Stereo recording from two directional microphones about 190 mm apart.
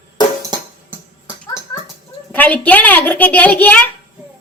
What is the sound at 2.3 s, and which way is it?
Speech, 10° left (ahead or behind).